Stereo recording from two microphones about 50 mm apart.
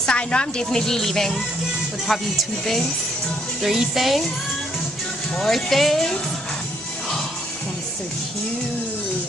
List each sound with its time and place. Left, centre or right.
0.0 s a woman's voice: centre
0.7 s speech: centre
3.6 s speech: centre
5.4 s speech: centre